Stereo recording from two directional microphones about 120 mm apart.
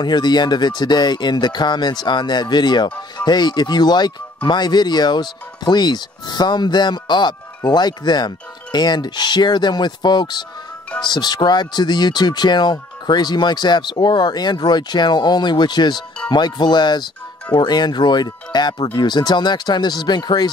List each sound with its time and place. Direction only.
0.0 s speech: 35° left (ahead or behind)